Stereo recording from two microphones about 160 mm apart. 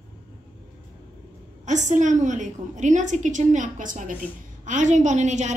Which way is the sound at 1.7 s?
50° right (ahead or behind).